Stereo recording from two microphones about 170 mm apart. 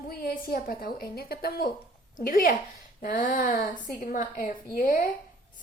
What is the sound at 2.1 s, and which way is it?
A woman's voice, 50° left (ahead or behind).